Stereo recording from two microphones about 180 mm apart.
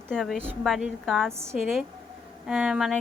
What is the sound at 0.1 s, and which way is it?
Speech, 5° left (ahead or behind).